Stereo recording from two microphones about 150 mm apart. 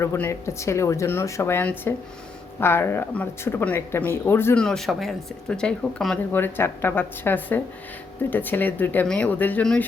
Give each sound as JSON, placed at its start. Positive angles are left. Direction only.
{"t": 0.0, "sound": "speech", "side_deg": 20}
{"t": 4.6, "sound": "speech", "side_deg": 0}